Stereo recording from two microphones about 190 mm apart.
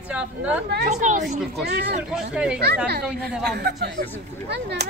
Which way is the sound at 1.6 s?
60° right (ahead or behind).